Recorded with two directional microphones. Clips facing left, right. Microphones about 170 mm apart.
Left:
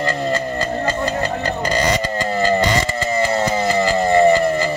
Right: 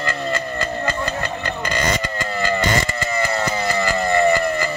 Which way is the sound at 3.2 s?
30° left (ahead or behind).